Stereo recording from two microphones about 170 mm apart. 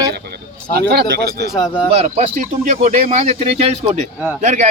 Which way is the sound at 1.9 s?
40° right (ahead or behind).